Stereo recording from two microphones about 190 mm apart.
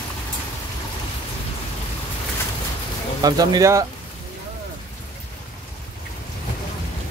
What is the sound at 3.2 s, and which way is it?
Speech, 20° right (ahead or behind).